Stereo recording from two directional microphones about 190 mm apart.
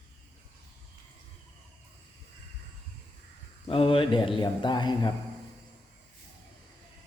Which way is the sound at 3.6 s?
30° left (ahead or behind).